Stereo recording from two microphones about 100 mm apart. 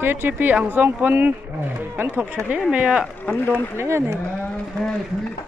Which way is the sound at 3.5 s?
25° right (ahead or behind).